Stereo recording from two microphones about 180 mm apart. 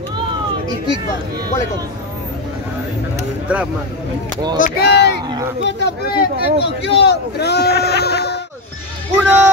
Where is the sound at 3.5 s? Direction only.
5° right (ahead or behind).